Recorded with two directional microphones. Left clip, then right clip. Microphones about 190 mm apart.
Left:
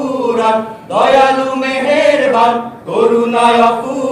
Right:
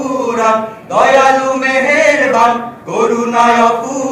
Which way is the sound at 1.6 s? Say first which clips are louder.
Right 2 dB; 25° left (ahead or behind).